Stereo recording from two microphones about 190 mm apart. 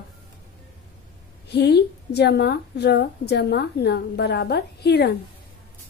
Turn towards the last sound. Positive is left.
turn(degrees=60)  # may be behind; listen again after turning